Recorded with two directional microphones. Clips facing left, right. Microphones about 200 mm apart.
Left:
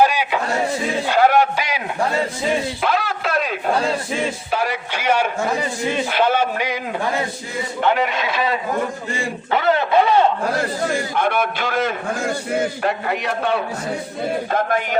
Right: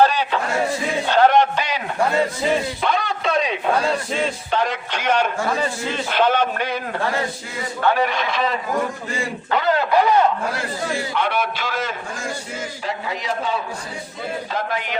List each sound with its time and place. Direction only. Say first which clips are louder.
0.0 s a sound: even; 10° left (ahead or behind)
1.0 s a man's voice: even; 10° left (ahead or behind)
2.8 s a sound: left 1 dB; 5° left (ahead or behind)
4.5 s a man's voice: right 1 dB; 10° left (ahead or behind)
9.5 s speech: left 1 dB; 25° left (ahead or behind)
10.6 s a man's voice: left 4 dB; 50° left (ahead or behind); by 13.6 s 65° left (ahead or behind)
14.5 s speech: left 5 dB; 50° left (ahead or behind)